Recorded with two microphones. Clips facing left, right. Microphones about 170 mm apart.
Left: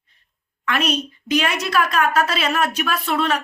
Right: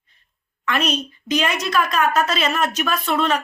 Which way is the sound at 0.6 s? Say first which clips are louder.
Even; 5° left (ahead or behind).